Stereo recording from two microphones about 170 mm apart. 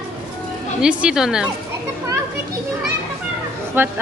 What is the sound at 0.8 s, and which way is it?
Speech, 5° right (ahead or behind).